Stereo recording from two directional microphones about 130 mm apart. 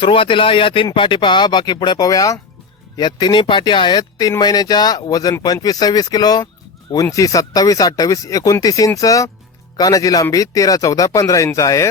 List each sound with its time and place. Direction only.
0.0 s speech: 45° left (ahead or behind); by 11.9 s 25° left (ahead or behind)